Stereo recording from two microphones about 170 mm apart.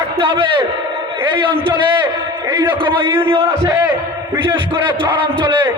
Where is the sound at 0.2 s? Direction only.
30° right (ahead or behind).